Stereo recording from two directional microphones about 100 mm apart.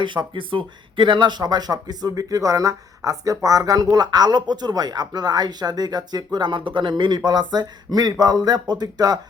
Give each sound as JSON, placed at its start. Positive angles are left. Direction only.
{"t": 0.0, "sound": "speech", "side_deg": -55}